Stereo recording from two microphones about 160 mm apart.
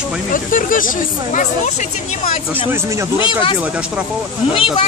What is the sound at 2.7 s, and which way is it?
Speech, 20° right (ahead or behind).